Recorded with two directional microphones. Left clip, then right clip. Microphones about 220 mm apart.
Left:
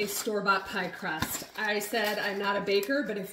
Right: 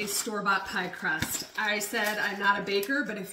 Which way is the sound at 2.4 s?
15° right (ahead or behind).